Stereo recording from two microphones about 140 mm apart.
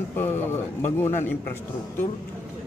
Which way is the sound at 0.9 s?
15° left (ahead or behind).